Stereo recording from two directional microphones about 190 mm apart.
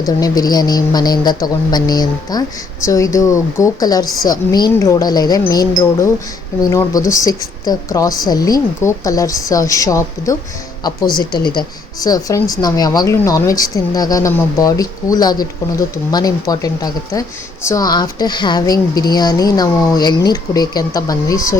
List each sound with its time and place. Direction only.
0.0 s a woman's voice: 20° left (ahead or behind)
12.0 s speech: 20° left (ahead or behind)